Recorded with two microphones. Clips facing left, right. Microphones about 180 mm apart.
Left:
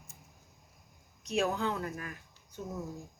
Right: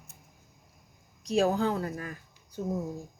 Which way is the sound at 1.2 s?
35° right (ahead or behind).